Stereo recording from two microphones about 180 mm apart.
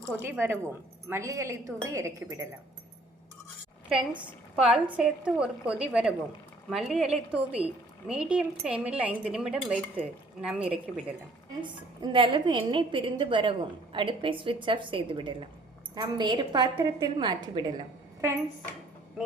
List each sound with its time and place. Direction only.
0.2 s speech: 10° right (ahead or behind)
3.8 s a woman's voice: 5° right (ahead or behind)
11.6 s a woman's voice: 25° right (ahead or behind)